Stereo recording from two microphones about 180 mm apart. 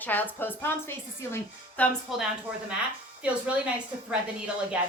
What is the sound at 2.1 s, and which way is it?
A woman's voice, centre (ahead or behind).